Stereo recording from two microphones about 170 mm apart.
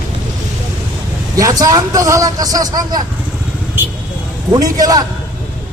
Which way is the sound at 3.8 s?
10° right (ahead or behind).